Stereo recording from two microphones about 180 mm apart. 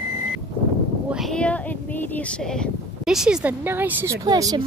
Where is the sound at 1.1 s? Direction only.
Centre (ahead or behind).